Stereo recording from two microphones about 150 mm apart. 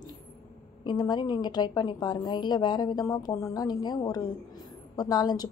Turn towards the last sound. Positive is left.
turn(degrees=25)  # may be behind; listen again after turning